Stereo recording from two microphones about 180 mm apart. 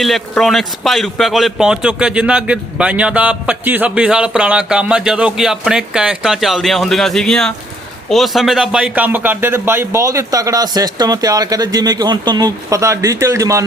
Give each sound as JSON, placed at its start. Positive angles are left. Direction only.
{"t": 0.0, "sound": "a man's voice", "side_deg": 0}